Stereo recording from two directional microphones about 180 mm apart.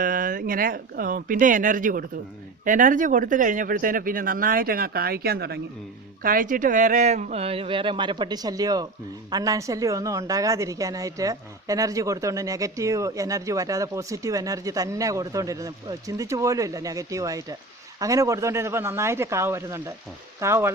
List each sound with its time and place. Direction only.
0.0 s speech: 50° right (ahead or behind)
6.2 s a woman's voice: 50° right (ahead or behind); by 20.7 s 15° right (ahead or behind)